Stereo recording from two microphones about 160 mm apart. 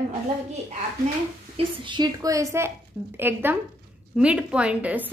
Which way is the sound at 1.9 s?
25° right (ahead or behind).